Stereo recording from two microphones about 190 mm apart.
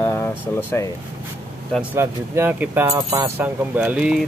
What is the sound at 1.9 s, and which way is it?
Speech, 15° right (ahead or behind).